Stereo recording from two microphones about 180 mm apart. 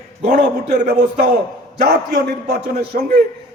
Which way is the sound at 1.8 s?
60° right (ahead or behind).